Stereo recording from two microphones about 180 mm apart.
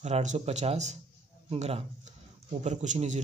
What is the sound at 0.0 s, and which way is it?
Speech, 40° right (ahead or behind).